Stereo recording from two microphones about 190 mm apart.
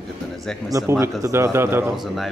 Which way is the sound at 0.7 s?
15° right (ahead or behind).